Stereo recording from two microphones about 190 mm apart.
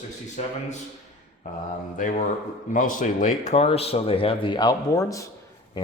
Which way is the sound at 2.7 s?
45° left (ahead or behind).